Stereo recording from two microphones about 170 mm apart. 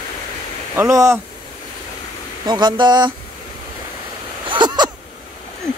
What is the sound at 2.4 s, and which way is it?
Speech, 25° right (ahead or behind).